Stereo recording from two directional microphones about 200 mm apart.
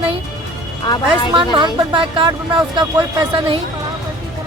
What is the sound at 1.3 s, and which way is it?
Speech, 25° right (ahead or behind).